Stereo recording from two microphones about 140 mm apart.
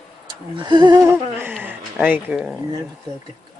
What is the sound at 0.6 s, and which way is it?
Humming, 30° right (ahead or behind).